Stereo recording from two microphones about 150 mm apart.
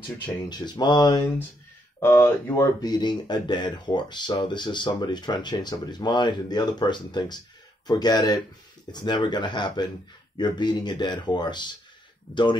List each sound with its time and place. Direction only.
0.5 s speech: 30° left (ahead or behind)
2.0 s speech: 15° left (ahead or behind)